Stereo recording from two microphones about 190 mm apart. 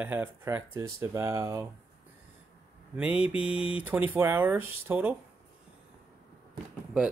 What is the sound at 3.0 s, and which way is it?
Speech, 5° right (ahead or behind).